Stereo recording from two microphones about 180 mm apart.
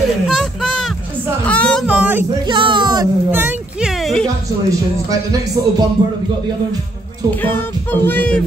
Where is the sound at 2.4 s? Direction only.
25° right (ahead or behind).